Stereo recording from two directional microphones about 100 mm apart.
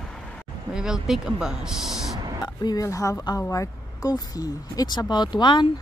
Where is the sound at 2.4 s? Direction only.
45° left (ahead or behind).